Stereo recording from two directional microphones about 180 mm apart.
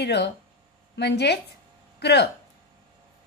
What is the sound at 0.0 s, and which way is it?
Speech, 70° left (ahead or behind).